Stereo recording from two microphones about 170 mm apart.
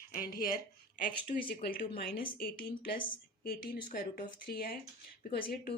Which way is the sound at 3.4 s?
60° left (ahead or behind).